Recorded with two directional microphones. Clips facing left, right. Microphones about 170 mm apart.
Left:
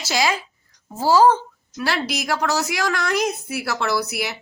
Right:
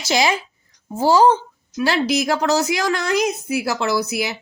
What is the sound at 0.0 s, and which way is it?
Speech, 20° right (ahead or behind).